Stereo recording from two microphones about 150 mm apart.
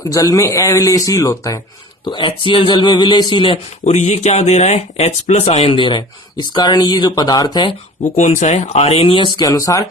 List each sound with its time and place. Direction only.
0.0 s speech: 25° left (ahead or behind)
2.0 s speech: 30° left (ahead or behind)
3.9 s speech: 50° left (ahead or behind); by 7.8 s 30° left (ahead or behind)
8.1 s speech: 50° left (ahead or behind); by 9.8 s 20° left (ahead or behind)